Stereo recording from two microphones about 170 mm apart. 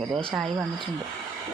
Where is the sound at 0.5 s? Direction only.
25° right (ahead or behind).